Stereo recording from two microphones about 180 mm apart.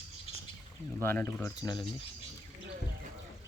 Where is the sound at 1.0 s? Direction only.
10° left (ahead or behind).